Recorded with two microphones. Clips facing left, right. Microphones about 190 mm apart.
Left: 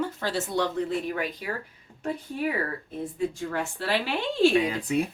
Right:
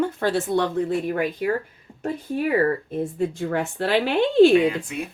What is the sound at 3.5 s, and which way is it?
Speech, 60° right (ahead or behind).